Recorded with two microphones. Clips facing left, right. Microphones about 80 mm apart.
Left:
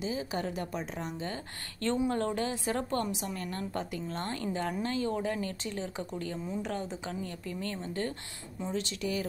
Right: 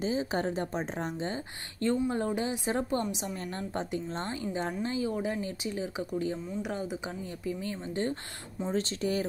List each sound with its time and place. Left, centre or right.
0.0 s a woman's voice: right
1.2 s a woman's voice: centre
8.7 s a woman's voice: right